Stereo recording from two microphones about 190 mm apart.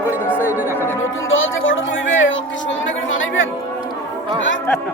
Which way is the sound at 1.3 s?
90° left.